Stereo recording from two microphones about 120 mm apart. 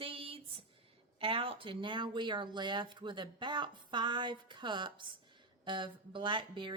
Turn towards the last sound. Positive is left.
turn(degrees=-45)  # may be behind; listen again after turning